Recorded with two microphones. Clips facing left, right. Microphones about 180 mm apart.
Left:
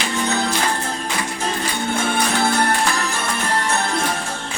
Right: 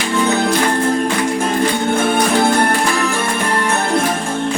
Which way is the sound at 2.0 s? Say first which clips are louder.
Right 5 dB; 55° right (ahead or behind).